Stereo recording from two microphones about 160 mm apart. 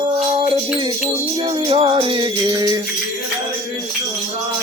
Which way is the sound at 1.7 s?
35° right (ahead or behind).